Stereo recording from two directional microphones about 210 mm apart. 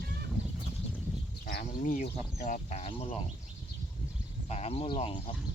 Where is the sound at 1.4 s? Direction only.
40° left (ahead or behind).